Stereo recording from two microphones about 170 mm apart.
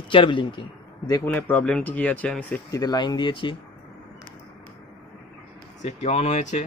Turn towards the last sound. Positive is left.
turn(degrees=45)  # may be behind; listen again after turning